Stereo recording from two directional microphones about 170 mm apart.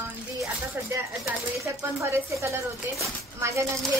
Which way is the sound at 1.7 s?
15° right (ahead or behind).